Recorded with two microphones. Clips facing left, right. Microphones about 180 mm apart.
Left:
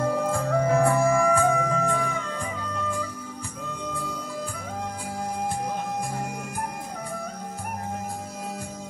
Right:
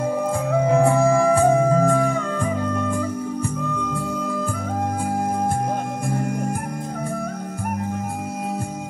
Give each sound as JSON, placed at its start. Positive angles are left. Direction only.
{"t": 0.0, "sound": "music", "side_deg": -10}
{"t": 0.7, "sound": "music", "side_deg": -25}